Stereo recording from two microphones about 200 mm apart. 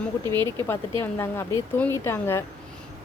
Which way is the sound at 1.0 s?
10° left (ahead or behind).